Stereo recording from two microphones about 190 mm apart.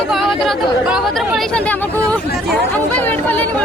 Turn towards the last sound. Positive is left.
turn(degrees=10)  # may be behind; listen again after turning